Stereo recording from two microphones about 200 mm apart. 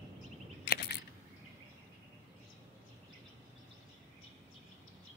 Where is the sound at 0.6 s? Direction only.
55° left (ahead or behind).